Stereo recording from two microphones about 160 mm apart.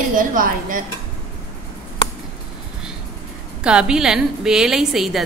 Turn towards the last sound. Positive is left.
turn(degrees=0)  # may be behind; listen again after turning